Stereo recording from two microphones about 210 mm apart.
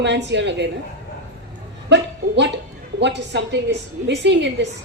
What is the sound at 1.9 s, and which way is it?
A woman's voice, 55° right (ahead or behind).